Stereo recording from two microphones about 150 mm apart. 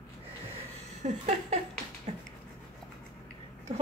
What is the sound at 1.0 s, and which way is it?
Speech, 55° right (ahead or behind).